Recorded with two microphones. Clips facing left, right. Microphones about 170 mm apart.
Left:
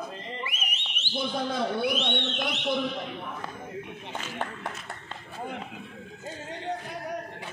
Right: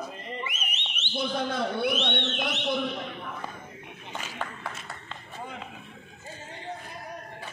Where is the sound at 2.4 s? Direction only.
Centre (ahead or behind).